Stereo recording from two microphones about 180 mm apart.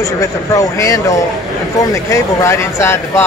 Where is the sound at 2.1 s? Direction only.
15° left (ahead or behind).